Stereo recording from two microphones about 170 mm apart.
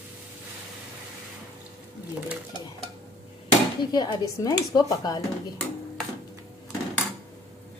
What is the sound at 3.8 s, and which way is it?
Speech, 25° left (ahead or behind).